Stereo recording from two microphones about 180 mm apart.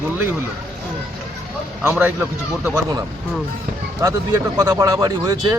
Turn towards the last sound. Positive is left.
turn(degrees=-20)  # may be behind; listen again after turning